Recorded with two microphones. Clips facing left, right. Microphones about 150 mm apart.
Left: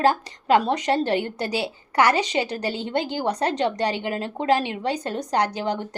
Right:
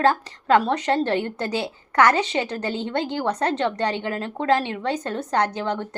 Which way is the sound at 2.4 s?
35° left (ahead or behind).